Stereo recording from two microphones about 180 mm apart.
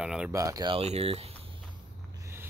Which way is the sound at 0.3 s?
15° right (ahead or behind).